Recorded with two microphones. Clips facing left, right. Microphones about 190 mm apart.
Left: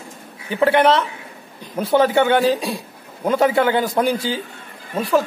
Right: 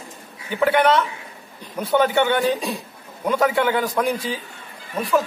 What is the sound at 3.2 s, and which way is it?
A man's voice, 25° left (ahead or behind).